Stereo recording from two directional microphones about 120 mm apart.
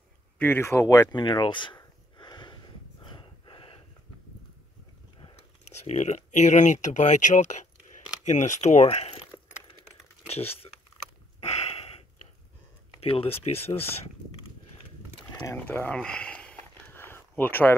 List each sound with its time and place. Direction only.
0.4 s speech: 20° left (ahead or behind)
1.1 s speech: 40° left (ahead or behind)
2.1 s a sound: 40° left (ahead or behind)
3.0 s gasp: 45° left (ahead or behind)
5.2 s speech: 60° left (ahead or behind)
10.2 s speech: 60° left (ahead or behind)
11.4 s a sound: 65° left (ahead or behind)
13.0 s speech: 55° left (ahead or behind)
15.5 s a sound: 15° left (ahead or behind)